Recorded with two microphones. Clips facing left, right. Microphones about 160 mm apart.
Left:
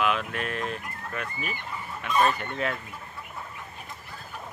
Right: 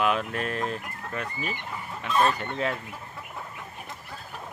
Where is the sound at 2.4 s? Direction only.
25° right (ahead or behind).